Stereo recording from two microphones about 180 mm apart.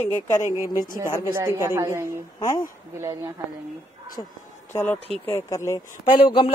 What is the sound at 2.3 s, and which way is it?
Speech, 20° left (ahead or behind).